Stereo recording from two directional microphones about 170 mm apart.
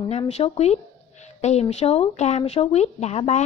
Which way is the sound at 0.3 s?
40° left (ahead or behind).